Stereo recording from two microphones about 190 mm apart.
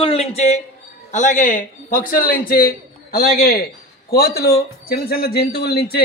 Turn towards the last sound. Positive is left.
turn(degrees=55)  # may be behind; listen again after turning